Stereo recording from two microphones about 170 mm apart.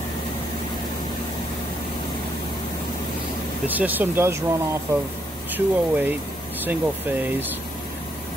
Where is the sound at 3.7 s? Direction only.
10° right (ahead or behind).